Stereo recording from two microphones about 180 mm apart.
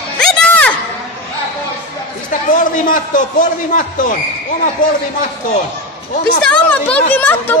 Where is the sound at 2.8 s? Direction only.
50° left (ahead or behind).